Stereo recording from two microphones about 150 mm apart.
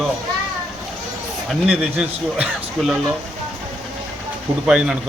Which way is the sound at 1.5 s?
5° right (ahead or behind).